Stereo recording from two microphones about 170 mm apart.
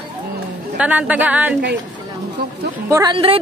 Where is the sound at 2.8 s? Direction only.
20° right (ahead or behind).